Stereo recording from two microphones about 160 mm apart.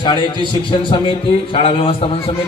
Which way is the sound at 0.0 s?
30° left (ahead or behind).